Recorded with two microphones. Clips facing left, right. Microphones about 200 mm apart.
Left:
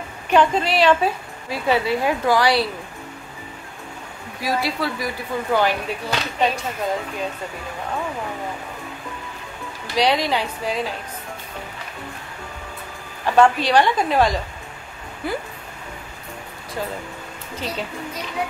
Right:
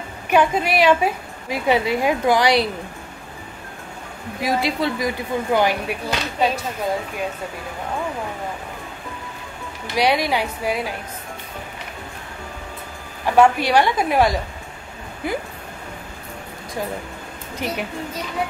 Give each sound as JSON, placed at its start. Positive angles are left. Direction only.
{"t": 0.3, "sound": "a woman's voice", "side_deg": -10}
{"t": 4.4, "sound": "speech", "side_deg": -20}
{"t": 9.9, "sound": "a woman's voice", "side_deg": -10}
{"t": 13.2, "sound": "a woman's voice", "side_deg": -10}
{"t": 17.6, "sound": "a woman's voice", "side_deg": -15}